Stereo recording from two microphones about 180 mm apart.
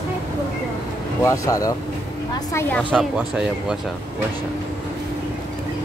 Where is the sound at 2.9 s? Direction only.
5° right (ahead or behind).